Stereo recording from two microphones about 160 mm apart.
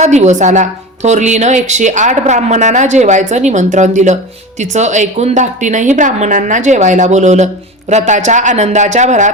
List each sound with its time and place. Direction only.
0.0 s a woman's voice: 45° right (ahead or behind)